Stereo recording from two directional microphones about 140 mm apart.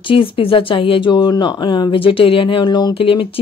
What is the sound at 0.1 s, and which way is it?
Speech, 40° left (ahead or behind).